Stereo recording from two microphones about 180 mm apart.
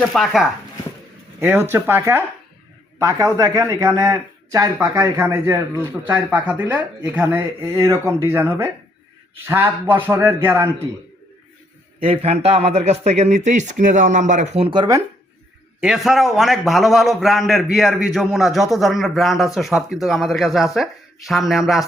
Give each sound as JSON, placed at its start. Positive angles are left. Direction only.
{"t": 0.0, "sound": "a man's voice", "side_deg": 0}
{"t": 1.4, "sound": "a man's voice", "side_deg": -10}
{"t": 11.9, "sound": "speech", "side_deg": -35}
{"t": 15.8, "sound": "a man's voice", "side_deg": -5}